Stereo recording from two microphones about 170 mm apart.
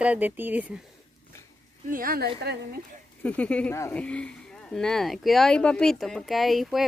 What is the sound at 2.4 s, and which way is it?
Speech, 75° right (ahead or behind).